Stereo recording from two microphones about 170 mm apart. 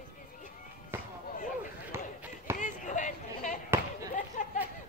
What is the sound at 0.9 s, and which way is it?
Basketball bounce, 15° right (ahead or behind).